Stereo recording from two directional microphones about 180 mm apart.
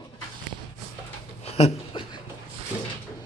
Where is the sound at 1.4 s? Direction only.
35° left (ahead or behind).